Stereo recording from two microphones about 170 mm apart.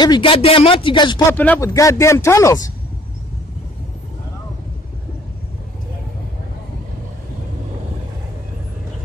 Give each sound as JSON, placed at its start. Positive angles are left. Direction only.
{"t": 0.0, "sound": "speech", "side_deg": 25}
{"t": 1.3, "sound": "speech", "side_deg": 10}